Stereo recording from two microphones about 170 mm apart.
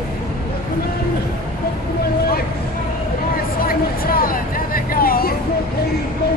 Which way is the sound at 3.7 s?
60° left (ahead or behind).